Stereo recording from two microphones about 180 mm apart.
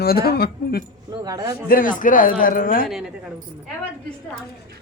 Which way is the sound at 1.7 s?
50° left (ahead or behind).